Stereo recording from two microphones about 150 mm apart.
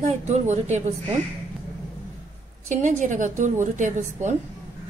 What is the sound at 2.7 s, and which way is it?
A woman's voice, 55° right (ahead or behind).